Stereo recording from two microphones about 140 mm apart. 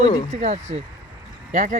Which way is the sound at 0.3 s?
55° right (ahead or behind).